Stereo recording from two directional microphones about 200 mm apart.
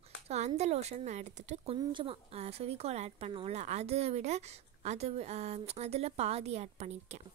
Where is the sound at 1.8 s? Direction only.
25° right (ahead or behind).